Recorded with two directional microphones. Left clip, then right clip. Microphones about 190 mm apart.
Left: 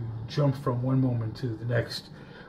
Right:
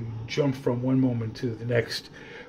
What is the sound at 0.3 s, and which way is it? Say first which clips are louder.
Speech: right 3 dB; 25° right (ahead or behind).